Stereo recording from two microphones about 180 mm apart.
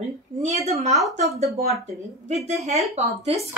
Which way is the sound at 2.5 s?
35° right (ahead or behind).